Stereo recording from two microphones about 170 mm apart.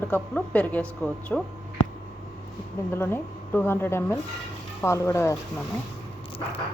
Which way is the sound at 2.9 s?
15° left (ahead or behind).